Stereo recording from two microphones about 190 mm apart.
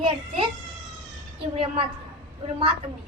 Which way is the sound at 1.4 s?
30° right (ahead or behind).